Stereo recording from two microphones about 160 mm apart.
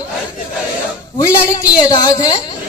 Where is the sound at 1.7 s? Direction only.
25° left (ahead or behind).